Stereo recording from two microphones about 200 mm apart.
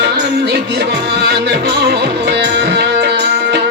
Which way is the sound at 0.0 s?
55° right (ahead or behind).